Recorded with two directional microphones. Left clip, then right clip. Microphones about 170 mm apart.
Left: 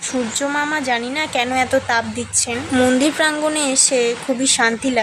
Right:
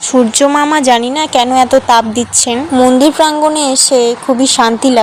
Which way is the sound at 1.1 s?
35° right (ahead or behind).